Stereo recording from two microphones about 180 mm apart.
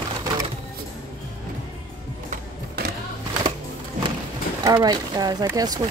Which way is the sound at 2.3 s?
55° right (ahead or behind).